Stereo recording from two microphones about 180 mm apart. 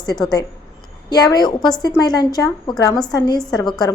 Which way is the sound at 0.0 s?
20° left (ahead or behind).